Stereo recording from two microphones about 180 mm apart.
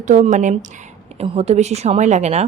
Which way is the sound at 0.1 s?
45° right (ahead or behind).